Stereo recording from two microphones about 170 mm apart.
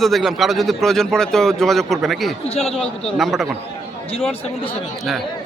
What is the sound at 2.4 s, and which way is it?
Speech, 35° left (ahead or behind).